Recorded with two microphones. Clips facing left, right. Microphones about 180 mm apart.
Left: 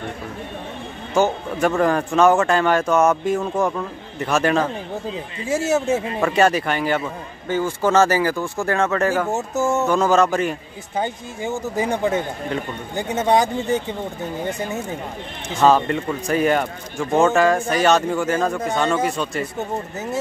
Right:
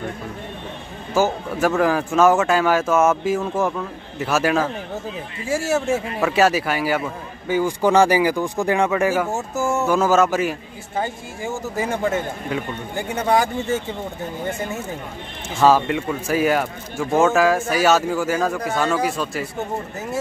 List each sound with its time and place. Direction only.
1.1 s speech: 5° right (ahead or behind)
5.4 s speech: 20° left (ahead or behind)
6.2 s speech: 5° right (ahead or behind)
9.3 s speech: 20° left (ahead or behind)
9.8 s speech: 5° right (ahead or behind)
11.0 s speech: 20° left (ahead or behind)
15.6 s speech: 5° right (ahead or behind)